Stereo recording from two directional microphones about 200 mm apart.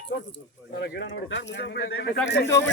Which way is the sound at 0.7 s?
55° left (ahead or behind).